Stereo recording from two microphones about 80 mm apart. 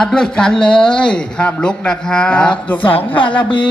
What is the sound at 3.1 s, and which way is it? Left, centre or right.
Music, left.